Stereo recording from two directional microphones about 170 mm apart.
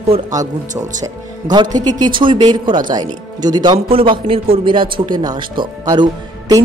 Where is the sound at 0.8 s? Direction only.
25° right (ahead or behind).